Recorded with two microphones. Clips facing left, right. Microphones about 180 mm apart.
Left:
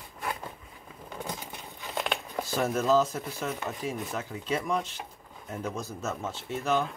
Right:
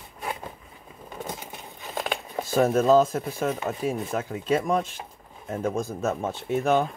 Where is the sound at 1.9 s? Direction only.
5° right (ahead or behind).